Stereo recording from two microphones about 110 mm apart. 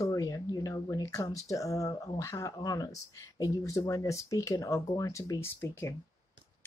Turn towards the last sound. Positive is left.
turn(degrees=25)  # may be behind; listen again after turning